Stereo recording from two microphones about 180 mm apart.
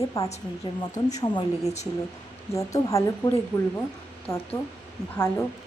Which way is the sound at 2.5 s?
15° left (ahead or behind).